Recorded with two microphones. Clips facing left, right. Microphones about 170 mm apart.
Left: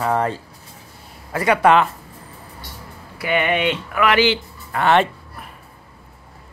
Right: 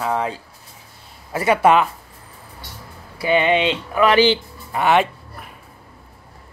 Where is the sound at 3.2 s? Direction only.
25° right (ahead or behind).